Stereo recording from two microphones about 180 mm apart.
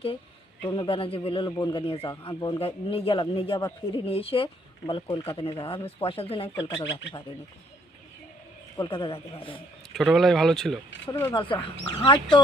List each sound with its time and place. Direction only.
0.6 s a man's voice: 25° left (ahead or behind)
8.7 s a man's voice: 30° left (ahead or behind)
9.9 s speech: centre (ahead or behind)
11.3 s a man's voice: 30° left (ahead or behind)